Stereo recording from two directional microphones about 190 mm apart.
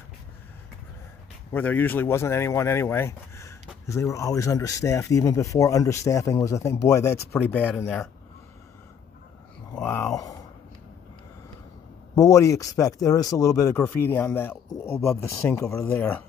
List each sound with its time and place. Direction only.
1.5 s speech: 10° left (ahead or behind)
9.8 s a sound: 10° left (ahead or behind)
12.2 s speech: 15° left (ahead or behind)